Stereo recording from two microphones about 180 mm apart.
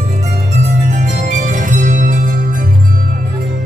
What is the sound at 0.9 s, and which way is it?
Music, 45° right (ahead or behind).